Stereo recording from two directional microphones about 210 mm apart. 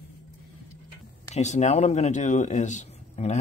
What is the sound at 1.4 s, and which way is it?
Speech, 35° left (ahead or behind).